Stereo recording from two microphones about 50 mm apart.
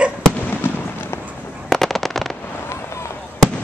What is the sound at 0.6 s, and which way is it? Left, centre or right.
Fireworks, left.